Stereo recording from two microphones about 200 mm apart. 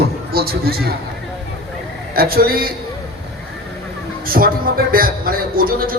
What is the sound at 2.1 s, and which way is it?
Speech, 50° right (ahead or behind).